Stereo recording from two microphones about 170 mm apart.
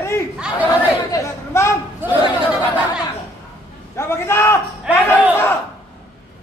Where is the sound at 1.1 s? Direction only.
15° left (ahead or behind).